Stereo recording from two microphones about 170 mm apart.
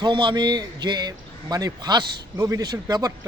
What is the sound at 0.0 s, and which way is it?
A man's voice, 25° right (ahead or behind).